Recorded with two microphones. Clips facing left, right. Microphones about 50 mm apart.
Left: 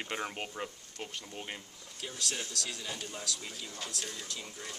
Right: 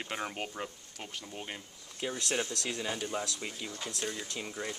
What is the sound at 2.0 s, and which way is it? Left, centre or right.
Speech, right.